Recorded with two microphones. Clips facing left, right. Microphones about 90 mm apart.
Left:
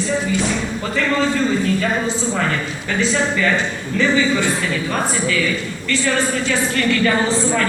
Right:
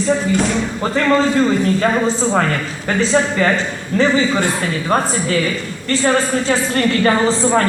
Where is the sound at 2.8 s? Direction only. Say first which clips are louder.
Right 4 dB; 40° right (ahead or behind).